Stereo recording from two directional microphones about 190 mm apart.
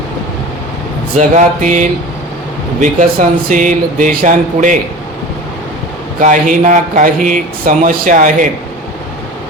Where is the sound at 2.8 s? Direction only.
45° right (ahead or behind).